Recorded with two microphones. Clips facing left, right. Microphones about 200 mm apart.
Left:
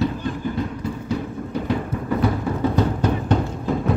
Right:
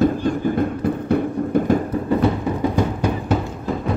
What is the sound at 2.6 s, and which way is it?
Music, 10° right (ahead or behind).